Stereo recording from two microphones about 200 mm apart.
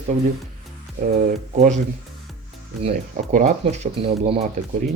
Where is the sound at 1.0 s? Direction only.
40° right (ahead or behind).